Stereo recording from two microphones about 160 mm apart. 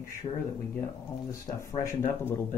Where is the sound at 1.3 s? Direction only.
20° left (ahead or behind).